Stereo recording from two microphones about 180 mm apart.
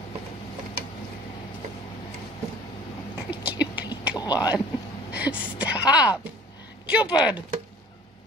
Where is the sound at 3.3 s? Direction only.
10° right (ahead or behind).